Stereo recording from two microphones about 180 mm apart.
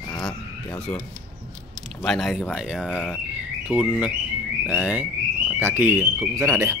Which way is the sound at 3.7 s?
5° right (ahead or behind).